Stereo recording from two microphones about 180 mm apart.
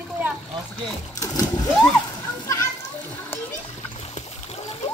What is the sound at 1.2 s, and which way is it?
Splash, 20° left (ahead or behind).